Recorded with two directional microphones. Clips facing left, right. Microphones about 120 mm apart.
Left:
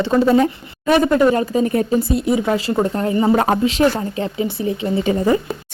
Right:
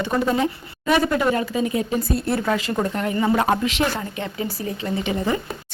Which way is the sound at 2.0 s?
20° left (ahead or behind).